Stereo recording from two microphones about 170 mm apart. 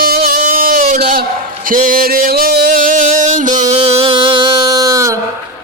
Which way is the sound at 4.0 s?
30° right (ahead or behind).